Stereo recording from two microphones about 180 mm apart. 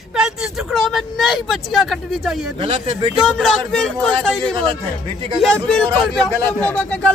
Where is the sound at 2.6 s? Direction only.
30° right (ahead or behind).